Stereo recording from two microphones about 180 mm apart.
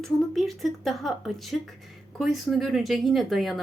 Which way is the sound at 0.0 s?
Centre (ahead or behind).